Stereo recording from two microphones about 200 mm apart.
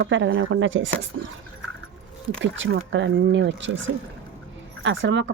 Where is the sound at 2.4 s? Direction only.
65° right (ahead or behind).